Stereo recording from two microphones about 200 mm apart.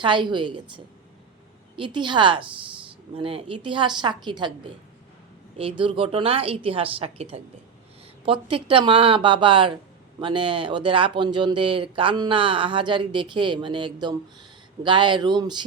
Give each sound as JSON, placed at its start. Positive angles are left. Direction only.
{"t": 0.0, "sound": "speech", "side_deg": -25}
{"t": 1.7, "sound": "speech", "side_deg": -25}
{"t": 5.5, "sound": "speech", "side_deg": -25}